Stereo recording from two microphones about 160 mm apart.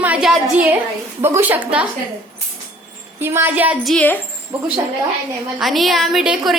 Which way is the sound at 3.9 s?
10° left (ahead or behind).